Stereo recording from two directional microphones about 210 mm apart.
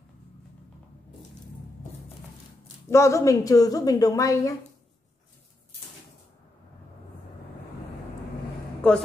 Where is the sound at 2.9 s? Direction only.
15° left (ahead or behind).